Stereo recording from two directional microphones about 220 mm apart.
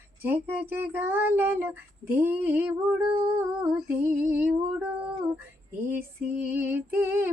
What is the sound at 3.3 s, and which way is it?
Female singing, 10° right (ahead or behind).